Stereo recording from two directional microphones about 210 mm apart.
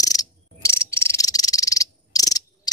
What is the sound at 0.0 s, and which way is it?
Cricket, 15° left (ahead or behind).